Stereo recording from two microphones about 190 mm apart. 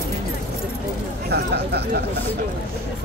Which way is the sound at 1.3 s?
60° right (ahead or behind).